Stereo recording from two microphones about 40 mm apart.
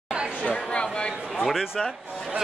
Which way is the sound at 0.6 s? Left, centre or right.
Left.